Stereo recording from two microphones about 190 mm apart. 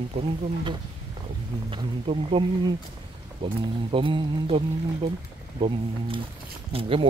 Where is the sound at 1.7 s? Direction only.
30° right (ahead or behind).